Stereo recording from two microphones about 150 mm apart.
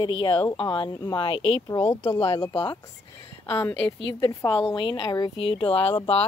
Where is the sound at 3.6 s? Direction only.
10° left (ahead or behind).